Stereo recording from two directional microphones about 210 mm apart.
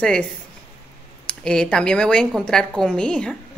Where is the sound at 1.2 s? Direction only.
5° left (ahead or behind).